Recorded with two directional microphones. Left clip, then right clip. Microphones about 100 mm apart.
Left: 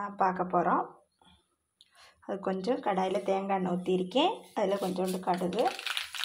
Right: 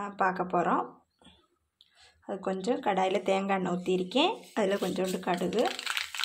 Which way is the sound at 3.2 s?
45° right (ahead or behind).